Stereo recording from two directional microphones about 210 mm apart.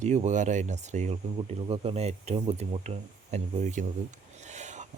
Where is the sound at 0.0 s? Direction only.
35° right (ahead or behind).